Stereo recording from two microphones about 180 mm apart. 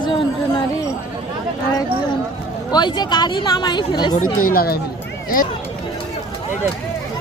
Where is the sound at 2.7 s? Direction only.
25° left (ahead or behind).